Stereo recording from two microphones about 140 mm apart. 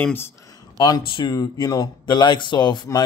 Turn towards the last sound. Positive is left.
turn(degrees=30)  # may be behind; listen again after turning